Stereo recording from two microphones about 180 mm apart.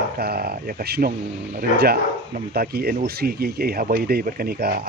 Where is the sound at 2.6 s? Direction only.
60° right (ahead or behind).